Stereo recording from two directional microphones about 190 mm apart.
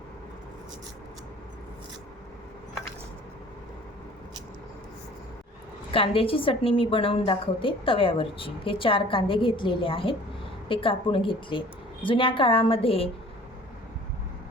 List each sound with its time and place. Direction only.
5.9 s a woman's voice: 30° left (ahead or behind)